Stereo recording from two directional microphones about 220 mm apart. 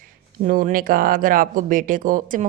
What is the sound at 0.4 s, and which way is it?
Speech, 40° right (ahead or behind).